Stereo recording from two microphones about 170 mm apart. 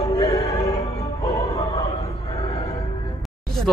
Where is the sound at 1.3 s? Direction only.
20° left (ahead or behind).